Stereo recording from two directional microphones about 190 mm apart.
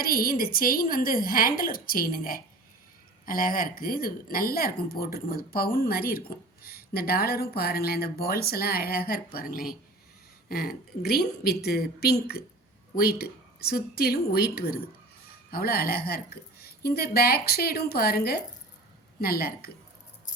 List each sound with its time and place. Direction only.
0.0 s a woman's voice: 50° left (ahead or behind)